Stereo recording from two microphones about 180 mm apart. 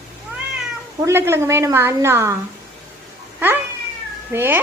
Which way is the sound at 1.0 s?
15° right (ahead or behind).